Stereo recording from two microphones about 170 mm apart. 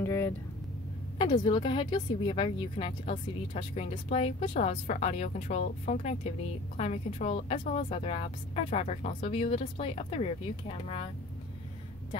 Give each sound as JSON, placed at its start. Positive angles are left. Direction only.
{"t": 0.0, "sound": "vehicle", "side_deg": 15}
{"t": 1.1, "sound": "speech", "side_deg": 25}